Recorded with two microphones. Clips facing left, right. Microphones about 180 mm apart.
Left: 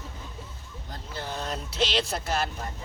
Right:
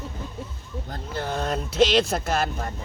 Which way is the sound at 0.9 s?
55° right (ahead or behind).